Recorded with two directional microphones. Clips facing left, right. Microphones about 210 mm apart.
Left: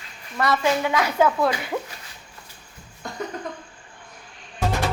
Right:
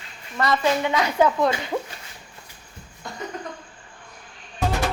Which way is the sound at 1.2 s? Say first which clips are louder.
Right 1 dB; 20° right (ahead or behind).